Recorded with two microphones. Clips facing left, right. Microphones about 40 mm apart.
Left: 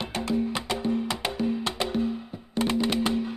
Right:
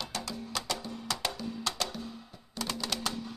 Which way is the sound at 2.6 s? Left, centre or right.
Left.